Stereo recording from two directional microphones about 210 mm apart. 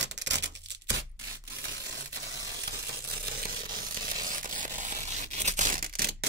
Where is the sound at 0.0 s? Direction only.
55° right (ahead or behind).